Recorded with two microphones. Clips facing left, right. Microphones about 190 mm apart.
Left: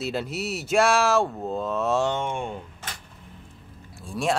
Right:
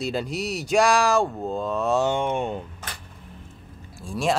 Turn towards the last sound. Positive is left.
turn(degrees=0)  # may be behind; listen again after turning